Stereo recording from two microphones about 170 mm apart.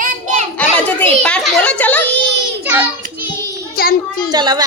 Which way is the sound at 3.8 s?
60° left (ahead or behind).